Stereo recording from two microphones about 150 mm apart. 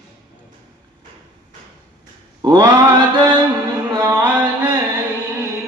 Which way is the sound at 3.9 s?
15° right (ahead or behind).